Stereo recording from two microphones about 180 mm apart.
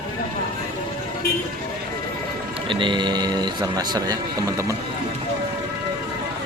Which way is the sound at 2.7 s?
25° right (ahead or behind).